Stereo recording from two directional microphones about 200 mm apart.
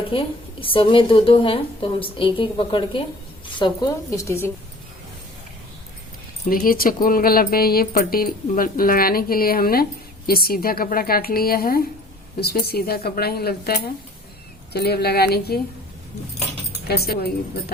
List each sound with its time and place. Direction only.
0.1 s a woman's voice: 25° left (ahead or behind)
6.5 s speech: 45° left (ahead or behind)
16.9 s speech: 50° left (ahead or behind)